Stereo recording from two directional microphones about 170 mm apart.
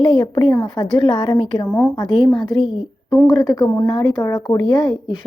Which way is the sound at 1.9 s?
25° left (ahead or behind).